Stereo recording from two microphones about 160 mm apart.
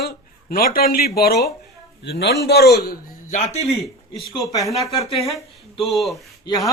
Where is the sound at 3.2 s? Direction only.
45° left (ahead or behind).